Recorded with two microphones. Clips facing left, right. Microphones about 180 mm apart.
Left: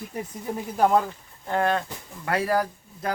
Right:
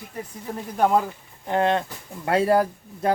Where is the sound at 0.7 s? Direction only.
Centre (ahead or behind).